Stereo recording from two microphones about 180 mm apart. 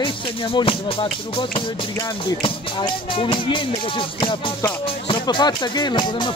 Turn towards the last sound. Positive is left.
turn(degrees=25)  # may be behind; listen again after turning